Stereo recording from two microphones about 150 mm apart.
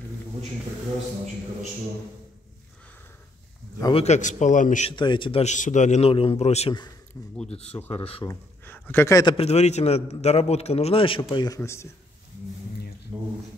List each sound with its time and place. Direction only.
3.9 s a man's voice: 50° left (ahead or behind)
4.8 s speech: 30° left (ahead or behind)
5.4 s a man's voice: 55° left (ahead or behind)
8.2 s speech: 15° left (ahead or behind)
9.2 s speech: 30° left (ahead or behind)
9.5 s a man's voice: 45° left (ahead or behind); by 11.9 s 20° left (ahead or behind)
13.1 s a sound: 20° right (ahead or behind)